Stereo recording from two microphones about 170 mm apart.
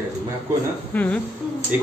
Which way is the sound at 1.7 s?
10° right (ahead or behind).